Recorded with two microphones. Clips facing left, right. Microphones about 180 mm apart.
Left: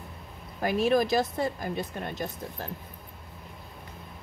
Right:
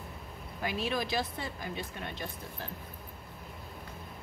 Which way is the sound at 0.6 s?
45° left (ahead or behind).